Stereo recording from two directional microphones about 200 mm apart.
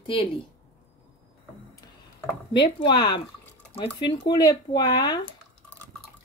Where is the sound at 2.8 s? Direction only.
20° left (ahead or behind).